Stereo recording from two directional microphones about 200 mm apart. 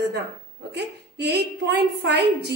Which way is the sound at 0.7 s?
55° right (ahead or behind).